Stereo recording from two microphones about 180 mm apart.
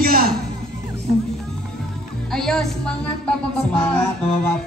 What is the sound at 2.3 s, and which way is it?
Music, centre (ahead or behind).